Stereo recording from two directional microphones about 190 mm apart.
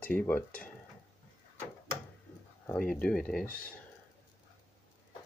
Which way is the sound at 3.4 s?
50° left (ahead or behind).